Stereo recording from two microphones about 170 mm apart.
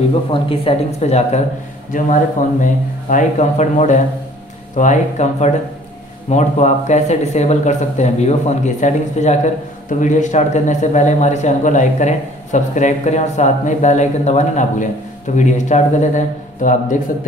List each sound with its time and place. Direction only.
0.3 s speech: 35° left (ahead or behind)
1.9 s a man's voice: 50° left (ahead or behind)